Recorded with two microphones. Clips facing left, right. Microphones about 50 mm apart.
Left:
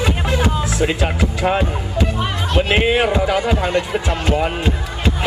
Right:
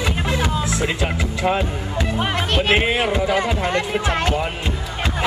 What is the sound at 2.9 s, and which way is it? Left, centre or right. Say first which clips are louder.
Speech: left 3 dB; left.